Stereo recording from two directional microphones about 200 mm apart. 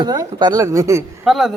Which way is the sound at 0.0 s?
20° right (ahead or behind).